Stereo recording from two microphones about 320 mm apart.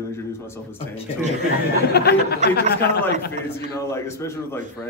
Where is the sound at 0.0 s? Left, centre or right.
Centre.